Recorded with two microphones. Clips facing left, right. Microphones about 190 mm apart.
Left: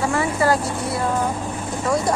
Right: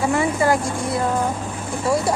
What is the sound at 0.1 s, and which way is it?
Speech, 20° right (ahead or behind).